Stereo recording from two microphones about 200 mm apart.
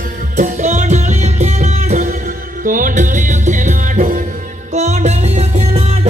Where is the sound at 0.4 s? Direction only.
40° right (ahead or behind).